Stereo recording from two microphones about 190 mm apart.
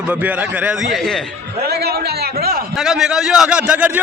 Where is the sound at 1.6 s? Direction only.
55° right (ahead or behind).